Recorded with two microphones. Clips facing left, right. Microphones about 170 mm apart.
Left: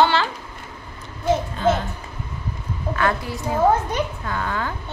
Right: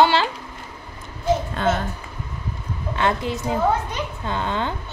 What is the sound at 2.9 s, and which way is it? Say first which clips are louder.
A woman's voice: right 1 dB; 20° right (ahead or behind).